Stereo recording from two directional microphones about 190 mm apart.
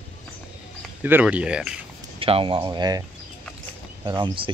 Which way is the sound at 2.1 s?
30° right (ahead or behind).